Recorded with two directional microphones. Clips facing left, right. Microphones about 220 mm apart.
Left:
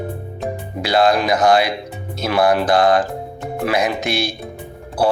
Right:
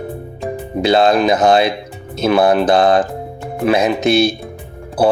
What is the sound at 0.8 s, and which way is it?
Speech, 25° right (ahead or behind).